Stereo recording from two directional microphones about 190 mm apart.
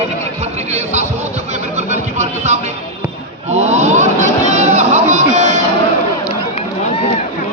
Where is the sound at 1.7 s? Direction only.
35° right (ahead or behind).